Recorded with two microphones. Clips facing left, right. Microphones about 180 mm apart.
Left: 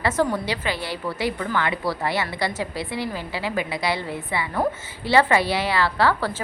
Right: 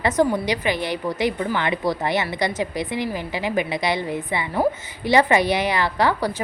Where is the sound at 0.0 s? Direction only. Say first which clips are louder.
Right 3 dB; 15° right (ahead or behind).